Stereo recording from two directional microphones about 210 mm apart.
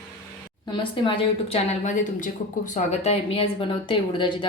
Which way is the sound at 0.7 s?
25° left (ahead or behind).